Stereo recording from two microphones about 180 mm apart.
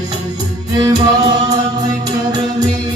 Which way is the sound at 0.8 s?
20° right (ahead or behind).